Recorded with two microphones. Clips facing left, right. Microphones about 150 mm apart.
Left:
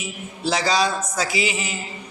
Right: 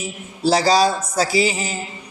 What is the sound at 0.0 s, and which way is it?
A man's voice, 35° right (ahead or behind).